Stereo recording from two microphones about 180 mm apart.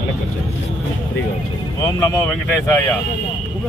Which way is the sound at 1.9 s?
15° left (ahead or behind).